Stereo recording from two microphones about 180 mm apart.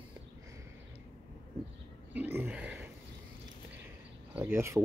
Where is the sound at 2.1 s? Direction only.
10° right (ahead or behind).